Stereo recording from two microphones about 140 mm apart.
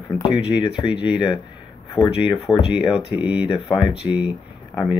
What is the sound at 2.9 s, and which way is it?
Speech, 10° right (ahead or behind).